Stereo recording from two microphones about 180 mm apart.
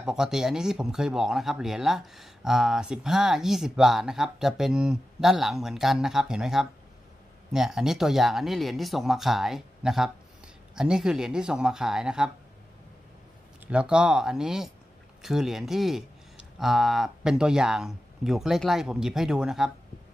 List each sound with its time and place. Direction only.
0.0 s speech: 5° right (ahead or behind)
13.7 s speech: 5° right (ahead or behind)